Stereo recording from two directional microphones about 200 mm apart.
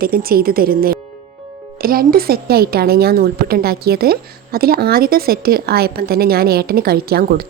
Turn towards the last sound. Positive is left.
turn(degrees=-50)  # may be behind; listen again after turning